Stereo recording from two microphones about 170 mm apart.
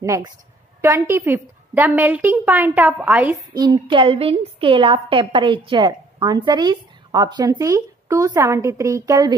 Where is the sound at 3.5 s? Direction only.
25° right (ahead or behind).